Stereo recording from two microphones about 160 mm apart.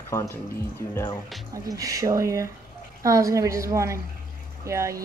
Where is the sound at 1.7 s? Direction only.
20° right (ahead or behind).